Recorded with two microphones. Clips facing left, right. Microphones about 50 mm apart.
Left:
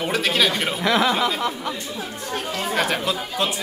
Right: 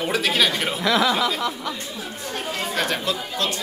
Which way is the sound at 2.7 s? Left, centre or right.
Centre.